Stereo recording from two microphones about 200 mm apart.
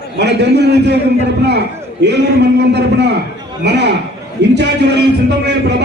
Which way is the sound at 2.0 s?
55° right (ahead or behind).